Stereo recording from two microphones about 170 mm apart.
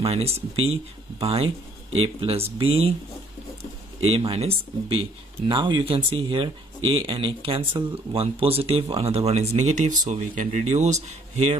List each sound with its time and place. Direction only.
0.0 s speech: 35° right (ahead or behind)
4.0 s speech: 35° right (ahead or behind)